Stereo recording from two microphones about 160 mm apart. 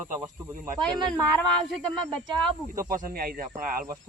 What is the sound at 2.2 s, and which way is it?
Speech, 30° right (ahead or behind).